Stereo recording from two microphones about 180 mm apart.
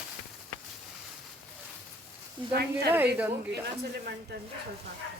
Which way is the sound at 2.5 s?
65° right (ahead or behind).